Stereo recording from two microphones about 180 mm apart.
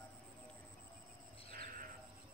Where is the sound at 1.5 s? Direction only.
50° right (ahead or behind).